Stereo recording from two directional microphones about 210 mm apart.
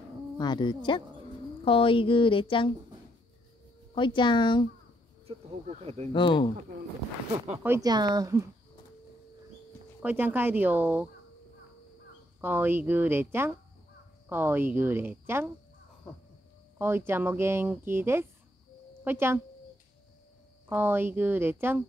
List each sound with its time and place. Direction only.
0.4 s speech: 20° left (ahead or behind)
3.9 s speech: 25° left (ahead or behind)
5.2 s speech: 30° right (ahead or behind)
6.1 s speech: 25° left (ahead or behind)
7.5 s speech: 10° right (ahead or behind)
10.0 s speech: 10° right (ahead or behind)
12.4 s speech: 10° right (ahead or behind)
16.7 s speech: 10° right (ahead or behind)
20.6 s speech: 10° right (ahead or behind)